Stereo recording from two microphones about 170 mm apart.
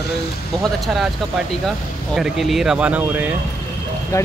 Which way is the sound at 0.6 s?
Centre (ahead or behind).